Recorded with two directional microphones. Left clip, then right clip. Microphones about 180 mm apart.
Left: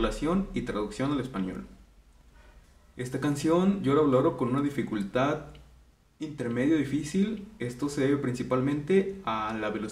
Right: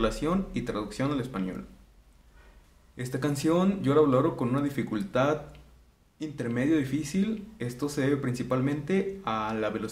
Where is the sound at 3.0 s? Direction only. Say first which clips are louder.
Even; 40° right (ahead or behind).